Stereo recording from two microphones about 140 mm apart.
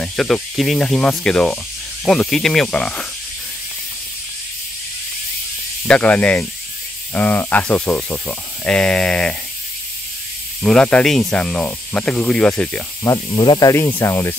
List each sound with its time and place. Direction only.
0.0 s speech: 5° left (ahead or behind)
5.9 s speech: 10° left (ahead or behind)
10.6 s speech: 5° left (ahead or behind)
13.0 s speech: 25° left (ahead or behind)
13.4 s speech: 35° left (ahead or behind)
13.7 s speech: 15° left (ahead or behind)